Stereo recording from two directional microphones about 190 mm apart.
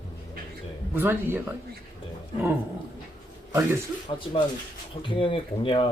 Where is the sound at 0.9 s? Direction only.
10° right (ahead or behind).